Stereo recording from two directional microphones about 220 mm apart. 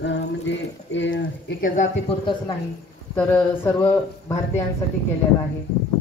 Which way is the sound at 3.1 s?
10° left (ahead or behind).